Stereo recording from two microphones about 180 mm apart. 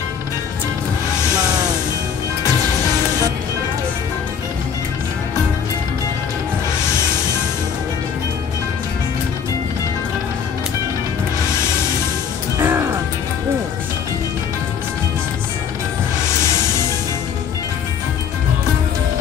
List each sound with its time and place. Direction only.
12.5 s music: 15° right (ahead or behind)